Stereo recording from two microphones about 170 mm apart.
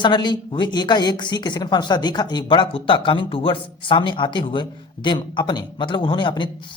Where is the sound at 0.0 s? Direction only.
25° left (ahead or behind).